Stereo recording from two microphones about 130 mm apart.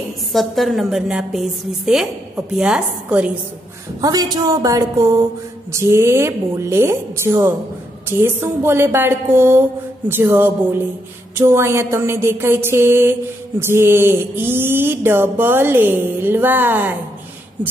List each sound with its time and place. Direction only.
0.3 s a woman's voice: centre (ahead or behind)
4.0 s a woman's voice: 30° right (ahead or behind)